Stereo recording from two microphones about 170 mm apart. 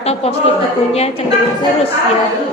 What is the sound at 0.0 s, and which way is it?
Speech, 35° left (ahead or behind).